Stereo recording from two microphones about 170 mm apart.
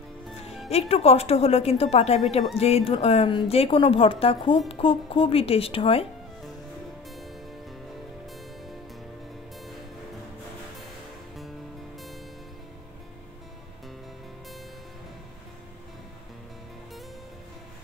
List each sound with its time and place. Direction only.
0.7 s a woman's voice: 35° left (ahead or behind)
7.1 s music: centre (ahead or behind)